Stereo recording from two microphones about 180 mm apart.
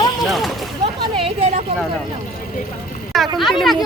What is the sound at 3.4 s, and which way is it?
Speech, centre (ahead or behind).